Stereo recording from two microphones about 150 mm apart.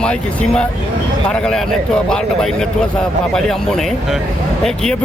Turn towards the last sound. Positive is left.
turn(degrees=5)  # may be behind; listen again after turning